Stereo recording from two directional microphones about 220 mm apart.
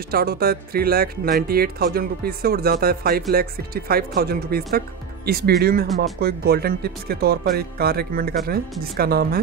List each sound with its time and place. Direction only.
0.1 s speech: 45° right (ahead or behind)